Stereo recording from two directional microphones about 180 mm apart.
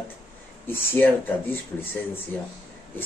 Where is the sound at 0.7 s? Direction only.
10° left (ahead or behind).